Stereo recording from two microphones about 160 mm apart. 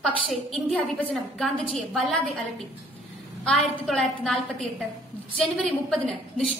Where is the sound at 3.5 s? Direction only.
5° left (ahead or behind).